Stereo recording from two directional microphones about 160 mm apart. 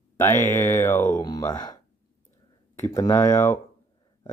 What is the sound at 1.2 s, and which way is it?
Speech, 25° left (ahead or behind).